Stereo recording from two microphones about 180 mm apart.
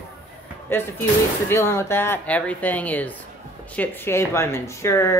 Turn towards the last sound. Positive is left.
turn(degrees=15)  # may be behind; listen again after turning